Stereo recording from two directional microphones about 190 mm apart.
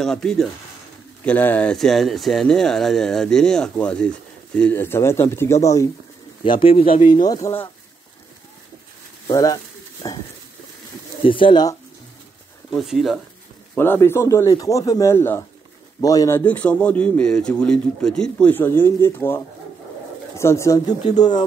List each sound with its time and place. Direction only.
0.0 s speech: 5° left (ahead or behind)
6.6 s speech: 30° left (ahead or behind)
7.2 s a man's voice: 15° left (ahead or behind)
9.3 s speech: 20° left (ahead or behind)
11.2 s speech: 25° left (ahead or behind)
12.7 s speech: centre (ahead or behind)
13.7 s a man's voice: 10° left (ahead or behind)